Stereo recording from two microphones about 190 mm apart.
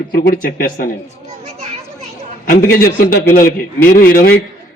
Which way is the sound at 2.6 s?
50° left (ahead or behind).